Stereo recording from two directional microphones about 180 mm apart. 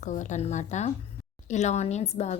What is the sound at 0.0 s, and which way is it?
Speech, 45° left (ahead or behind).